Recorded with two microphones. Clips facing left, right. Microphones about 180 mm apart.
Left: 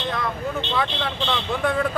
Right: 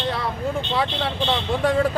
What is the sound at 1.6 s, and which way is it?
Speech, 35° right (ahead or behind).